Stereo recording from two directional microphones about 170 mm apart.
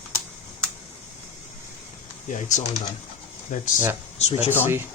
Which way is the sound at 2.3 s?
45° left (ahead or behind).